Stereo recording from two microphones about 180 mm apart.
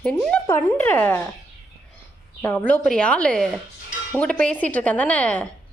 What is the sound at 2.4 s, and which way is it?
Speech, 10° left (ahead or behind).